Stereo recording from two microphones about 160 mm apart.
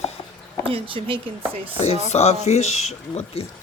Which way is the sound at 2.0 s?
45° left (ahead or behind).